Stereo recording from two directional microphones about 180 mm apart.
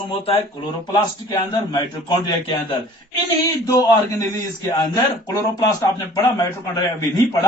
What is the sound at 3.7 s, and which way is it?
A man's voice, 20° left (ahead or behind).